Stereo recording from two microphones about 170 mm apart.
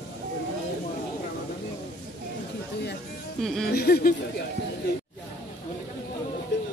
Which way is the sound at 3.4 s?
5° left (ahead or behind).